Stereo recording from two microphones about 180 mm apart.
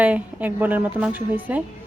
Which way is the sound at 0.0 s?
10° right (ahead or behind).